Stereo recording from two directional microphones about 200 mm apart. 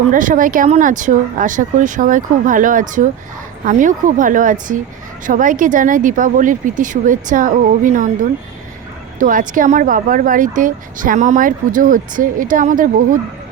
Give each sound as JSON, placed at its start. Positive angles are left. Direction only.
{"t": 0.1, "sound": "speech", "side_deg": -40}